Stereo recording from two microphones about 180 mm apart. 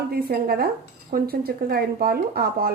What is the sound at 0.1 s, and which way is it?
Speech, 60° right (ahead or behind).